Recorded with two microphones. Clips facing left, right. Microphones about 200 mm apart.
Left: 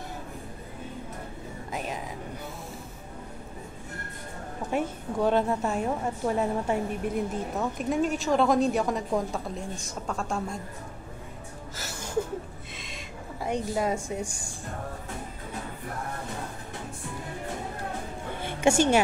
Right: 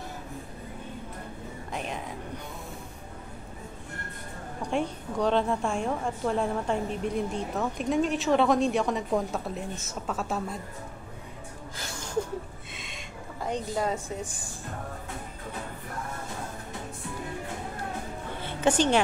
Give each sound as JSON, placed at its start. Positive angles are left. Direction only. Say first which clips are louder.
{"t": 1.7, "sound": "speech", "louder": "left 1 dB", "side_deg": 5}
{"t": 4.6, "sound": "a woman's voice", "louder": "even", "side_deg": 5}
{"t": 11.7, "sound": "a sound", "louder": "left 1 dB", "side_deg": 5}
{"t": 18.4, "sound": "music", "louder": "left 2 dB", "side_deg": 10}